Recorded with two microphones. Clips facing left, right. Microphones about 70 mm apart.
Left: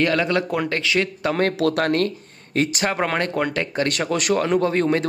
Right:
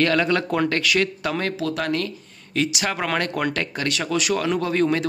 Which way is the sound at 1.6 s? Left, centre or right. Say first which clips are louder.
Left 5 dB; left.